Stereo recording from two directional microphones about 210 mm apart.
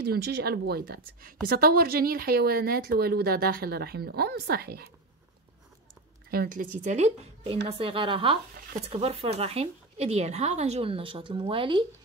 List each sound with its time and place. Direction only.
0.0 s speech: 50° right (ahead or behind)
6.3 s a woman's voice: 45° right (ahead or behind); by 11.8 s 25° right (ahead or behind)